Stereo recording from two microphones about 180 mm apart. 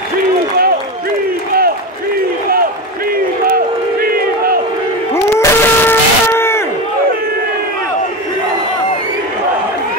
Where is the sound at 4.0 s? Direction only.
55° right (ahead or behind).